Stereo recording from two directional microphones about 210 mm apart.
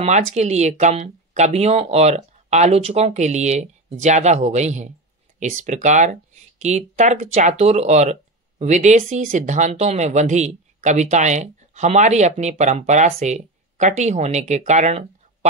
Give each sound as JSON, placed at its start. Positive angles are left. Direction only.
{"t": 0.0, "sound": "speech", "side_deg": -35}